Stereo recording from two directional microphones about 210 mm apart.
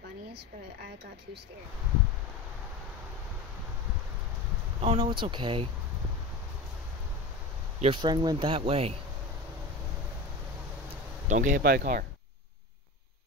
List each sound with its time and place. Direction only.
4.8 s speech: 25° right (ahead or behind)
7.8 s speech: 20° right (ahead or behind)
10.9 s speech: 35° right (ahead or behind)